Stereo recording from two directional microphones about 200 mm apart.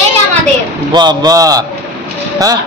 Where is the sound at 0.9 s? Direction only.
20° right (ahead or behind).